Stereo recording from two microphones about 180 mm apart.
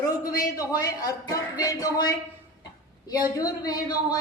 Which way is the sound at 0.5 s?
20° left (ahead or behind).